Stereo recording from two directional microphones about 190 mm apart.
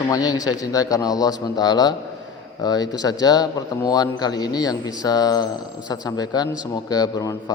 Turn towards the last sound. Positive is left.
turn(degrees=20)  # may be behind; listen again after turning